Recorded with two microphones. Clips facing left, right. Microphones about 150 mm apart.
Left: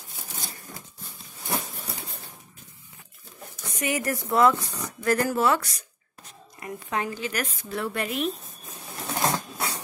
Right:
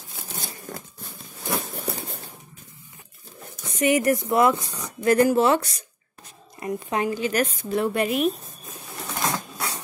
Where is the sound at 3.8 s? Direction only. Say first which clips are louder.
Right 8 dB; 20° right (ahead or behind).